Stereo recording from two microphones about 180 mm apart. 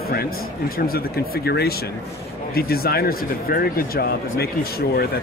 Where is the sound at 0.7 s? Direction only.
55° left (ahead or behind).